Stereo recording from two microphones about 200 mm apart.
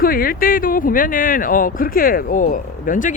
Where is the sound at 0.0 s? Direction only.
45° left (ahead or behind).